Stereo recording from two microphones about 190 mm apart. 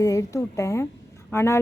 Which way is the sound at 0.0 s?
15° left (ahead or behind).